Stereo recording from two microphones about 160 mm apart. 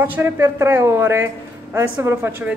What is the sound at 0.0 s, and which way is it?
A woman's voice, 15° right (ahead or behind).